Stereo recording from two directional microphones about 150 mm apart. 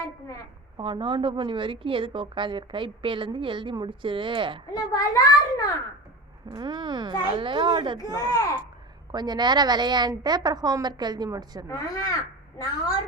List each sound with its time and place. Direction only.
0.8 s a woman's voice: 35° right (ahead or behind)
4.7 s a child's voice: 25° left (ahead or behind)
6.5 s a woman's voice: 30° right (ahead or behind)
8.2 s a child's voice: 25° left (ahead or behind)
9.1 s a woman's voice: 30° right (ahead or behind)
11.7 s a child's voice: 25° left (ahead or behind)